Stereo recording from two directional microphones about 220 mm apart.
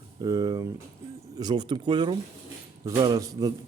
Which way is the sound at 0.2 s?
15° right (ahead or behind).